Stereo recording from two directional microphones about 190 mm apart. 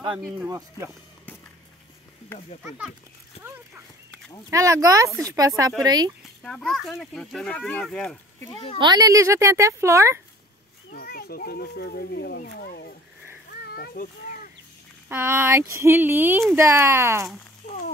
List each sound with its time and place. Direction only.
0.5 s speech: 20° right (ahead or behind)
4.5 s a child's voice: 15° right (ahead or behind)
6.4 s speech: 5° left (ahead or behind)
8.5 s speech: 30° left (ahead or behind)
8.7 s a child's voice: 20° right (ahead or behind)
10.9 s speech: 50° left (ahead or behind)
13.5 s a sound: 55° left (ahead or behind)
15.0 s a child's voice: 10° right (ahead or behind)